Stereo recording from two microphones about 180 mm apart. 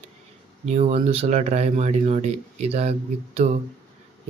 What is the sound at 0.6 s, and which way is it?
Speech, 35° right (ahead or behind).